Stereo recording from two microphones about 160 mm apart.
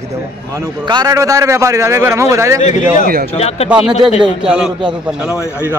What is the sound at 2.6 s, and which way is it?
Speech, 50° left (ahead or behind).